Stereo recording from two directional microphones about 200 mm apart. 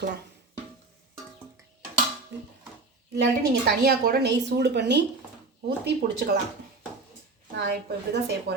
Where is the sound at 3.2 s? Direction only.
50° right (ahead or behind).